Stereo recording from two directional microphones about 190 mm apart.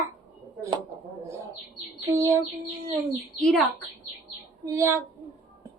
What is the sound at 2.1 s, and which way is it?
Child singing, 15° right (ahead or behind).